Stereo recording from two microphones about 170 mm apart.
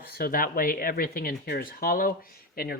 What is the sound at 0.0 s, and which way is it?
Speech, 60° left (ahead or behind).